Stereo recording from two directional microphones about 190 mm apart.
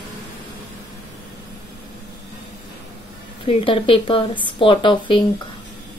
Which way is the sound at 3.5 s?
30° left (ahead or behind).